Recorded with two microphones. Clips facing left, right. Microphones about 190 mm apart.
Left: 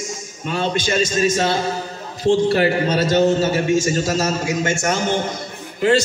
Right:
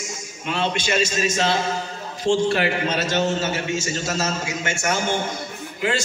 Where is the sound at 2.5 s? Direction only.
35° left (ahead or behind).